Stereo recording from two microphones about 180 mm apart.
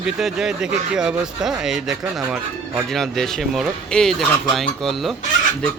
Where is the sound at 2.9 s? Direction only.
Centre (ahead or behind).